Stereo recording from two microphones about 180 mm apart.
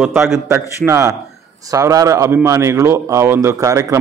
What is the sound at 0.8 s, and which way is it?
A man's voice, 15° right (ahead or behind).